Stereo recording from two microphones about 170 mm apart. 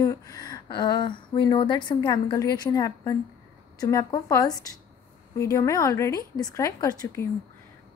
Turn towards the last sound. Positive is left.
turn(degrees=20)  # may be behind; listen again after turning